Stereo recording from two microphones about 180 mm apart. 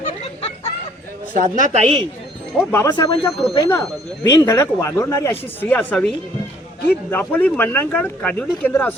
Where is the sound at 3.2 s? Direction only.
Centre (ahead or behind).